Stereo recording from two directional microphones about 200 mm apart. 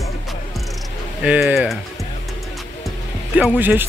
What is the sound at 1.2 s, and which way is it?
Speech, 5° right (ahead or behind).